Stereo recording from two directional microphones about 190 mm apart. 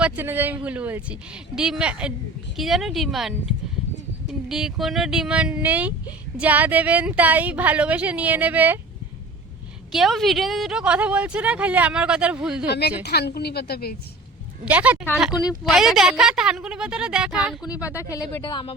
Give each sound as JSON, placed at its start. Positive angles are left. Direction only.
{"t": 0.0, "sound": "a woman's voice", "side_deg": -10}
{"t": 9.9, "sound": "a woman's voice", "side_deg": 0}
{"t": 13.0, "sound": "a woman's voice", "side_deg": 60}
{"t": 14.6, "sound": "a woman's voice", "side_deg": -10}
{"t": 17.9, "sound": "speech", "side_deg": 15}